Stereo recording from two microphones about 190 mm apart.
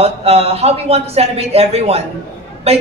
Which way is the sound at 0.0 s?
30° right (ahead or behind).